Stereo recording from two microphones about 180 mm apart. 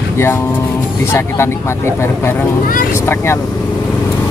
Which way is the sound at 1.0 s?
15° left (ahead or behind).